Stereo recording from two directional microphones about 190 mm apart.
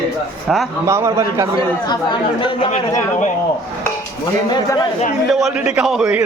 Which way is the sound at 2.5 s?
40° left (ahead or behind).